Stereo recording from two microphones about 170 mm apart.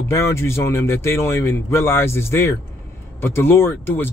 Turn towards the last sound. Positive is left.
turn(degrees=15)  # may be behind; listen again after turning